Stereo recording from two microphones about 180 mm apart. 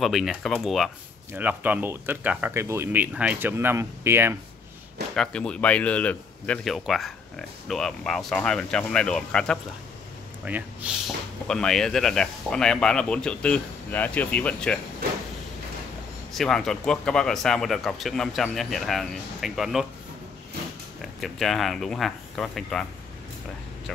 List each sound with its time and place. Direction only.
0.0 s speech: centre (ahead or behind)
5.1 s speech: 5° left (ahead or behind)
10.4 s speech: 10° right (ahead or behind)
11.4 s speech: 5° left (ahead or behind)
16.3 s speech: centre (ahead or behind)
21.0 s speech: centre (ahead or behind)